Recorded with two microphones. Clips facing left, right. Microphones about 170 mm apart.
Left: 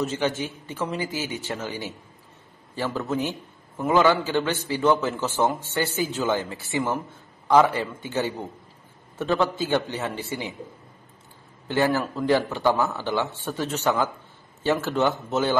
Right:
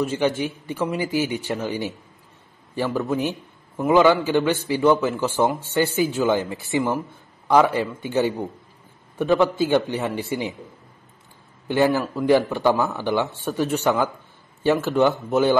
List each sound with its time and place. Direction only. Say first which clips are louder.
0.0 s a man's voice: right 4 dB; 15° right (ahead or behind)
11.6 s a man's voice: right 3 dB; 15° right (ahead or behind)